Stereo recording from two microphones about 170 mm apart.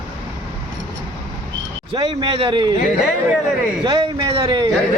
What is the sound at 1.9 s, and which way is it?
Speech, 30° right (ahead or behind).